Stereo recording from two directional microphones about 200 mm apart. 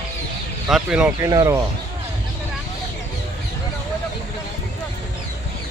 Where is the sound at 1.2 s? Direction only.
15° right (ahead or behind).